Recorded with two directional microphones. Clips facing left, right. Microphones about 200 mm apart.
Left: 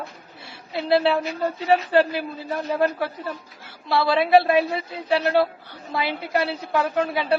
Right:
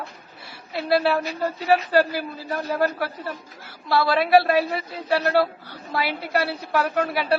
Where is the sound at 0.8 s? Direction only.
20° left (ahead or behind).